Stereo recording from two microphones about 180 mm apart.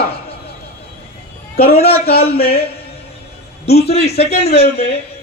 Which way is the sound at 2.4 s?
60° left (ahead or behind).